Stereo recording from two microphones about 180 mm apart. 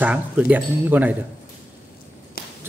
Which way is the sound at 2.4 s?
55° left (ahead or behind).